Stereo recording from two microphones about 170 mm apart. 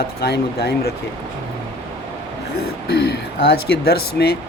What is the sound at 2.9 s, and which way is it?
Speech, 70° left (ahead or behind).